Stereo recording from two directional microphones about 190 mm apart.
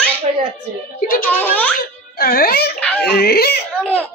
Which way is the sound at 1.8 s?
50° left (ahead or behind).